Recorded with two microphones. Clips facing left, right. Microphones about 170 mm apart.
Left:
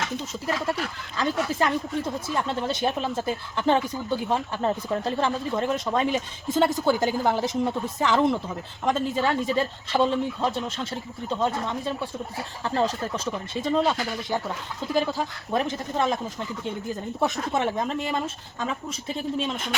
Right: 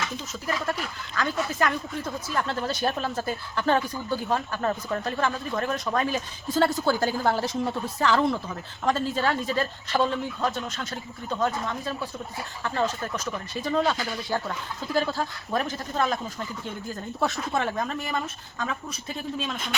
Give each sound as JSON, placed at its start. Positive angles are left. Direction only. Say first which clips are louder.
{"t": 1.1, "sound": "speech", "louder": "left 2 dB", "side_deg": 25}
{"t": 12.6, "sound": "speech", "louder": "left 2 dB", "side_deg": 30}